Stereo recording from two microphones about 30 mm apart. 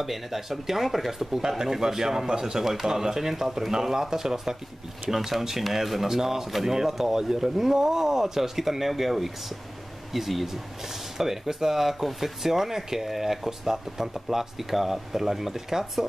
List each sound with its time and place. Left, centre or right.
0.0 s speech: centre
1.6 s speech: centre